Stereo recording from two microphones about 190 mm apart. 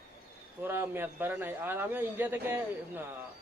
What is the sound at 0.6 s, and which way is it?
A man's voice, 10° right (ahead or behind).